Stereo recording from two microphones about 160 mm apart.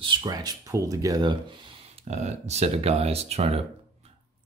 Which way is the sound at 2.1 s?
45° right (ahead or behind).